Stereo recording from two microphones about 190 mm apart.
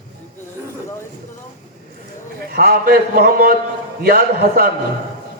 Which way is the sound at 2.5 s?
50° right (ahead or behind).